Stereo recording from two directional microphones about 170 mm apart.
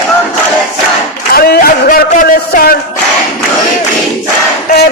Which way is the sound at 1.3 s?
65° left (ahead or behind).